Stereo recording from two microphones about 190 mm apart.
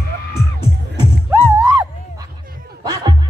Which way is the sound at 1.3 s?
15° right (ahead or behind).